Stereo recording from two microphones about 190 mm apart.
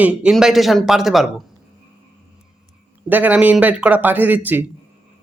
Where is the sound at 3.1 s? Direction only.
10° right (ahead or behind).